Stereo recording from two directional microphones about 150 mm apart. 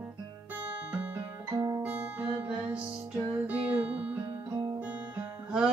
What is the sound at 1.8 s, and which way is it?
Guitar, 10° right (ahead or behind).